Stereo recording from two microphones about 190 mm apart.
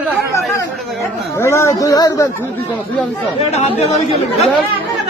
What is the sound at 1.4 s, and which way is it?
Speech, 15° left (ahead or behind).